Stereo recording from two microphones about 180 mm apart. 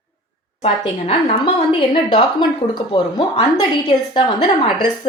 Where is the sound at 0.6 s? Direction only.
35° left (ahead or behind).